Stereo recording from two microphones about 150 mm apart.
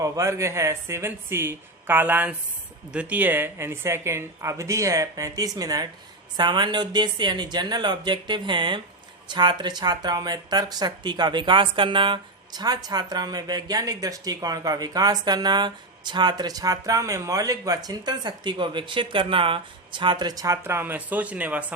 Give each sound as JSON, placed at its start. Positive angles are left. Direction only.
{"t": 0.0, "sound": "speech", "side_deg": -20}